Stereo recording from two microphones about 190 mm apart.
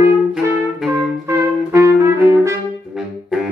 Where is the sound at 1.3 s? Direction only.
15° right (ahead or behind).